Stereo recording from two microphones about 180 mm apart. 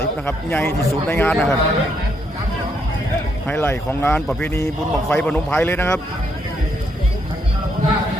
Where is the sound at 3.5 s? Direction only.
10° left (ahead or behind).